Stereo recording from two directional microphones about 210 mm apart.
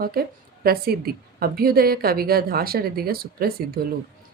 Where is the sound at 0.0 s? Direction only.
45° right (ahead or behind).